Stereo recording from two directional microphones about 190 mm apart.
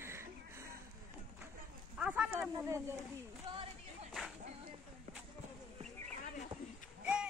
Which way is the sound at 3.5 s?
25° right (ahead or behind).